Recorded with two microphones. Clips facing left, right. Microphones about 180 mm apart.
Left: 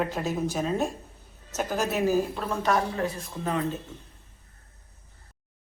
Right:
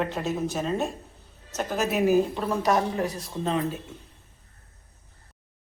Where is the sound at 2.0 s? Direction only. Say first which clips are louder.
Right 4 dB; 15° right (ahead or behind).